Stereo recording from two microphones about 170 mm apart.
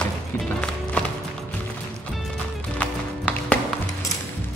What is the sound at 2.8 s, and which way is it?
Music, 10° left (ahead or behind).